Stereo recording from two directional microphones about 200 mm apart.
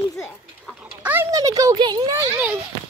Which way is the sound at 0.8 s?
10° right (ahead or behind).